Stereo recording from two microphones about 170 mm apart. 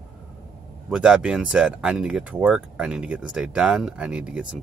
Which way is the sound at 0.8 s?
5° right (ahead or behind).